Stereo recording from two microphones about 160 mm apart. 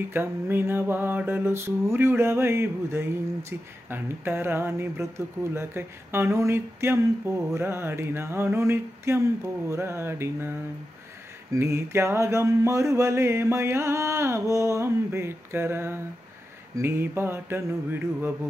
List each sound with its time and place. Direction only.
0.1 s mantra: 15° right (ahead or behind)
11.5 s mantra: 15° right (ahead or behind)